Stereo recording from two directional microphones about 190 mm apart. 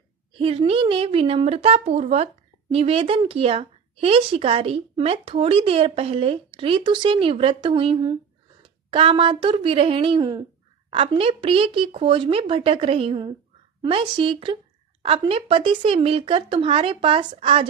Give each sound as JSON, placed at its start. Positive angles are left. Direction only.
{"t": 0.3, "sound": "speech", "side_deg": -30}